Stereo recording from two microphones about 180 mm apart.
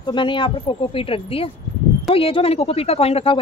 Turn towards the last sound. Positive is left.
turn(degrees=30)  # may be behind; listen again after turning